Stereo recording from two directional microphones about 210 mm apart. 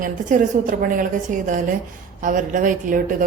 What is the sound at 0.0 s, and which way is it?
A woman's voice, 40° right (ahead or behind).